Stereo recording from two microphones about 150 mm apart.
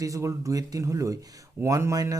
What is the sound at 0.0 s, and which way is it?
Speech, 20° right (ahead or behind).